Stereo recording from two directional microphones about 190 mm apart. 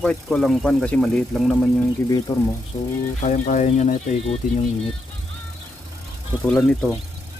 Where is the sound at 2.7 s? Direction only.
30° left (ahead or behind).